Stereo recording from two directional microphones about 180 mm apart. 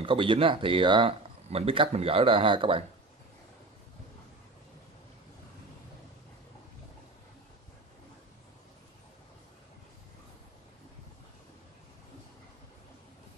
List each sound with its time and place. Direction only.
0.0 s speech: 30° right (ahead or behind)